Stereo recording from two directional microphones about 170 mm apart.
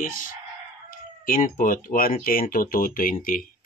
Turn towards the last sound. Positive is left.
turn(degrees=55)  # may be behind; listen again after turning